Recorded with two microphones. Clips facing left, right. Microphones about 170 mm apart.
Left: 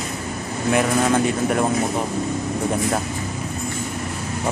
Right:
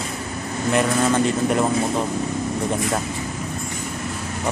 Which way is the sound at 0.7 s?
5° left (ahead or behind).